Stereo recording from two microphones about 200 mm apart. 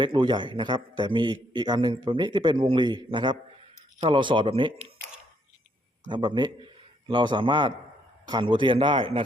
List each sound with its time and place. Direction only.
0.0 s a man's voice: 25° right (ahead or behind)
6.1 s a man's voice: 25° right (ahead or behind)